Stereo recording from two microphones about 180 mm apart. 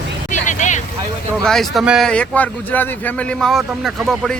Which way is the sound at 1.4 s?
Centre (ahead or behind).